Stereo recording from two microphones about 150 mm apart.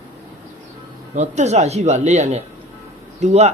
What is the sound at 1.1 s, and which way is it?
Speech, 50° right (ahead or behind).